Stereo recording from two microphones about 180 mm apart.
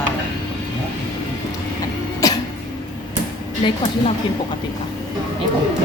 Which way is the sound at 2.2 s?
20° left (ahead or behind).